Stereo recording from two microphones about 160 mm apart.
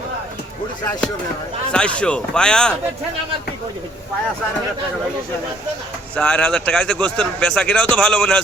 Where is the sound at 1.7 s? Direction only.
5° left (ahead or behind).